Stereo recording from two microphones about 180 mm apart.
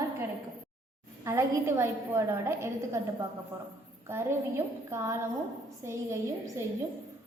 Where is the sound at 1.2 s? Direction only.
15° right (ahead or behind).